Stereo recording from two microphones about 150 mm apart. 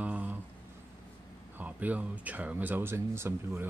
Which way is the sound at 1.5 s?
10° right (ahead or behind).